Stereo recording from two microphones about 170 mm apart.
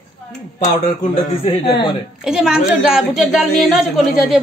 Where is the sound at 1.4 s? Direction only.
30° left (ahead or behind).